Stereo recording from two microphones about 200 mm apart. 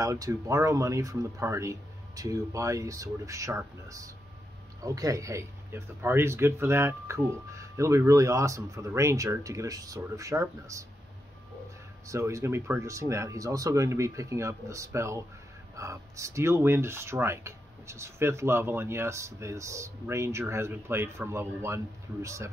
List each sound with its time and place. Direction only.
0.0 s speech: 15° right (ahead or behind)
12.1 s speech: 15° right (ahead or behind)